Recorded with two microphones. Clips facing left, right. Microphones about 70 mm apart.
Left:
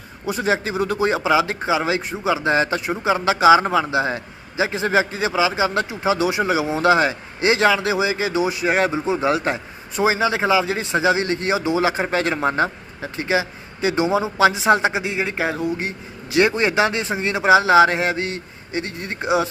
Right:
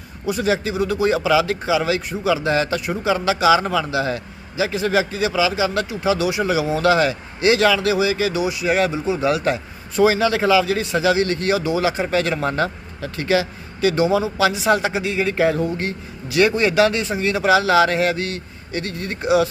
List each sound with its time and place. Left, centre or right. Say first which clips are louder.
0.3 s speech: right 1 dB; left